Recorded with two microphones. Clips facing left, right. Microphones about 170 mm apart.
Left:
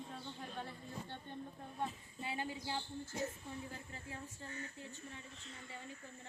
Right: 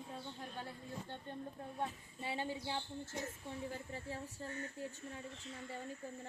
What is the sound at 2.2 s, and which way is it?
Speech, 30° right (ahead or behind).